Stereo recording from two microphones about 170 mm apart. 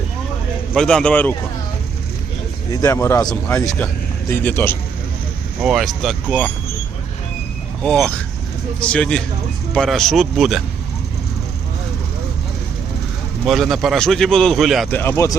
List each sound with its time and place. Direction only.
0.7 s speech: 5° left (ahead or behind)
2.8 s a man's voice: 15° left (ahead or behind)
5.6 s speech: centre (ahead or behind)
7.9 s speech: 5° left (ahead or behind)
13.4 s speech: centre (ahead or behind)
14.9 s a man's voice: 15° left (ahead or behind)